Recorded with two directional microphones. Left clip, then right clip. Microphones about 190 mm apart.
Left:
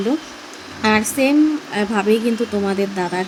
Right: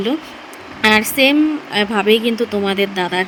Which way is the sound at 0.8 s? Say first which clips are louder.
Right 4 dB; 25° right (ahead or behind).